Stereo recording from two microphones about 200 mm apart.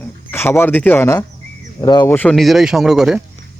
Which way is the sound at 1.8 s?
20° left (ahead or behind).